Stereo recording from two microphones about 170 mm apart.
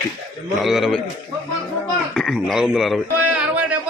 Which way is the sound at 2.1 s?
Centre (ahead or behind).